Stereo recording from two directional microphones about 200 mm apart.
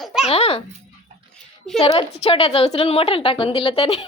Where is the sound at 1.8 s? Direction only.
30° left (ahead or behind).